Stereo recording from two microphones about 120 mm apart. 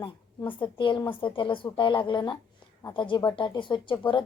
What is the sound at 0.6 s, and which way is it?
A woman's voice, 40° left (ahead or behind).